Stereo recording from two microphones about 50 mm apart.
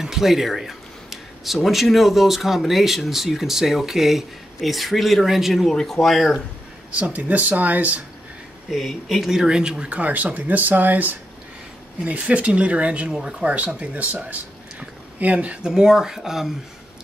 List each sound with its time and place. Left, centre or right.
0.0 s speech: centre
5.7 s speech: centre
7.0 s speech: right
8.6 s speech: centre
9.9 s speech: right
15.6 s speech: centre